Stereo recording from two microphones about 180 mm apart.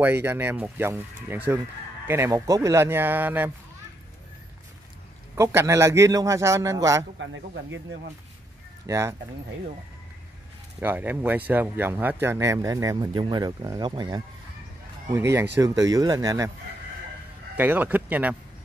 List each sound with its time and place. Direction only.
0.0 s speech: 15° right (ahead or behind)
5.3 s speech: 15° right (ahead or behind)
8.8 s speech: 15° right (ahead or behind)
10.8 s speech: 10° right (ahead or behind)
17.6 s speech: 10° right (ahead or behind)